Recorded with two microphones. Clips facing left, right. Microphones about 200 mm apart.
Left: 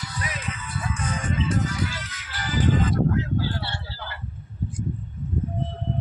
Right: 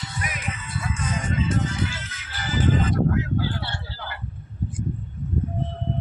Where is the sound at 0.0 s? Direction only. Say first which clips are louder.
Right 1 dB; 25° right (ahead or behind).